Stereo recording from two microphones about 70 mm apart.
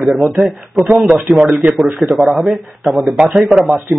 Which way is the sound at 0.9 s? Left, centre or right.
Centre.